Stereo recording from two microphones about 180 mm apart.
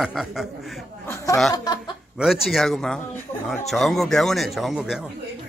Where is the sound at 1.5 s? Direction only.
20° left (ahead or behind).